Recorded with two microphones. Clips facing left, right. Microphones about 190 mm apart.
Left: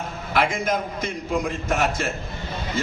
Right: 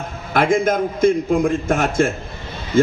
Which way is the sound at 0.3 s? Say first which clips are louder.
Right 6 dB; 50° right (ahead or behind).